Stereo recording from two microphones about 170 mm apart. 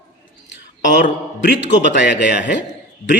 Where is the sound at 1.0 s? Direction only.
90° left.